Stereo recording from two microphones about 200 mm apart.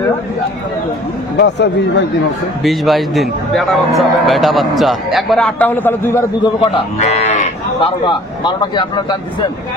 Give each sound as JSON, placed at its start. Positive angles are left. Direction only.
{"t": 1.4, "sound": "speech", "side_deg": 55}
{"t": 2.6, "sound": "a man's voice", "side_deg": 0}
{"t": 6.4, "sound": "cattle", "side_deg": 25}